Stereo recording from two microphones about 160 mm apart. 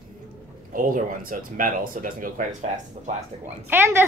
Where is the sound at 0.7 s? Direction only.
60° right (ahead or behind).